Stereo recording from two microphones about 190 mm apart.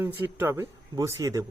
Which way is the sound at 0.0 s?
10° right (ahead or behind).